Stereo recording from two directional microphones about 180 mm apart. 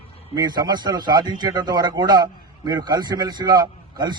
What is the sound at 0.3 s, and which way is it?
A man's voice, 20° right (ahead or behind).